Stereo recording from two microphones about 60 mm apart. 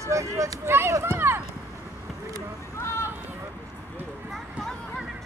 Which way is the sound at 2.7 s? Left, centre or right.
Left.